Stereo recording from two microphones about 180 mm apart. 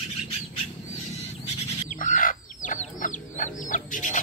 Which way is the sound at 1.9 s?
45° left (ahead or behind).